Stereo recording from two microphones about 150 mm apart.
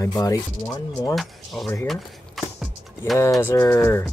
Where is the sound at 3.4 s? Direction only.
20° left (ahead or behind).